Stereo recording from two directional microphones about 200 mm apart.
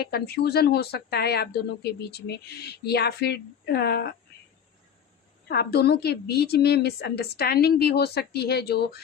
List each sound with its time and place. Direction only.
0.0 s speech: 50° left (ahead or behind)
5.5 s speech: 55° left (ahead or behind)